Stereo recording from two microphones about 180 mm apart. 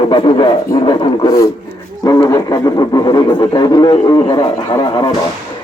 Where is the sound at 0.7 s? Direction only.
25° left (ahead or behind).